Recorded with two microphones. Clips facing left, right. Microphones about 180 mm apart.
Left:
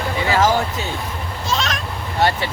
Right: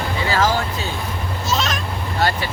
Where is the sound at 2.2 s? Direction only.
25° left (ahead or behind).